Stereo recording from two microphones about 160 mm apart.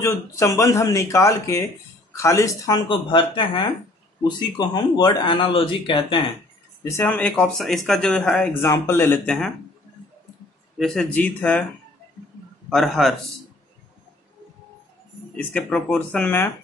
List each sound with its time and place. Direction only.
0.0 s speech: 20° left (ahead or behind)
2.9 s speech: 30° left (ahead or behind)
6.8 s speech: 20° left (ahead or behind)
7.2 s a man's voice: 5° left (ahead or behind)
8.6 s speech: 15° left (ahead or behind)
10.8 s a man's voice: centre (ahead or behind)
12.6 s a man's voice: centre (ahead or behind)
15.3 s speech: 5° left (ahead or behind)